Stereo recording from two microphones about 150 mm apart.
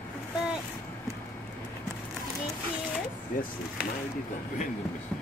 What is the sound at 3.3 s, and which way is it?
Speech, 65° left (ahead or behind).